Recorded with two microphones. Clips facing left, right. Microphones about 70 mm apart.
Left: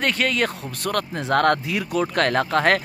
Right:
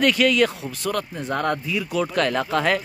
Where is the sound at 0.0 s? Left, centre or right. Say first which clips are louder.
Right 4 dB; left.